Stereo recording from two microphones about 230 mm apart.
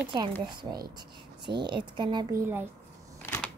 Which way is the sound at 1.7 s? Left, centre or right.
Centre.